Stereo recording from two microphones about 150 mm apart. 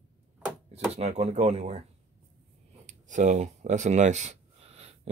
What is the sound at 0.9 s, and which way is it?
Speech, 45° right (ahead or behind).